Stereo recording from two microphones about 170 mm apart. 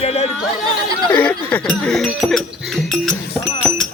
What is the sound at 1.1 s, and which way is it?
Chink, 10° left (ahead or behind).